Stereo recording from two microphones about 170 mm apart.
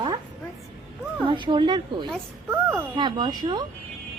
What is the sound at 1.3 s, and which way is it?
Speech, 30° right (ahead or behind).